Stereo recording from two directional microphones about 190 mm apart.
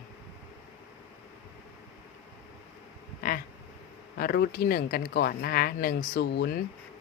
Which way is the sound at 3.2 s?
50° left (ahead or behind).